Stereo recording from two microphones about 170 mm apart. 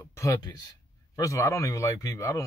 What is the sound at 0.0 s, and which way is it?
Speech, 15° left (ahead or behind).